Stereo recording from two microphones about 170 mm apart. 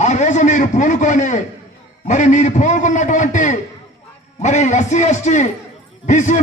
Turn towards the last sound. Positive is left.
turn(degrees=45)  # may be behind; listen again after turning